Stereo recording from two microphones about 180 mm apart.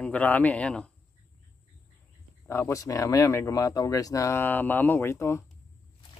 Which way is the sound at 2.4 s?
15° left (ahead or behind).